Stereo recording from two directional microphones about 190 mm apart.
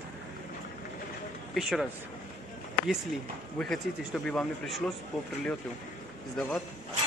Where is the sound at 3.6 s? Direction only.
5° left (ahead or behind).